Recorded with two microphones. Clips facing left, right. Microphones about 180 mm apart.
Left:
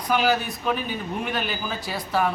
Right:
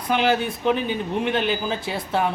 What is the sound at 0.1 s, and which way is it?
Speech, 25° right (ahead or behind).